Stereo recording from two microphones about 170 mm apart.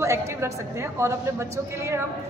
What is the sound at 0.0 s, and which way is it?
Speech, 15° right (ahead or behind).